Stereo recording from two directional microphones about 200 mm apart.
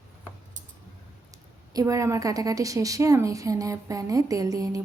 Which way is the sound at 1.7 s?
15° right (ahead or behind).